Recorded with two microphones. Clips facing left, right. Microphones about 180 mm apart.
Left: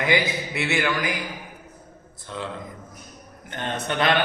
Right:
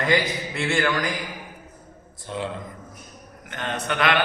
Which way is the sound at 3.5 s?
30° left (ahead or behind).